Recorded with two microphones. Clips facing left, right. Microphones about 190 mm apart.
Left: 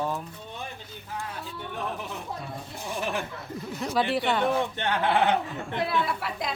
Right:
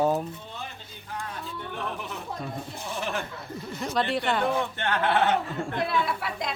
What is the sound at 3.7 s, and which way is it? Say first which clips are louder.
Speech: left 1 dB; centre (ahead or behind).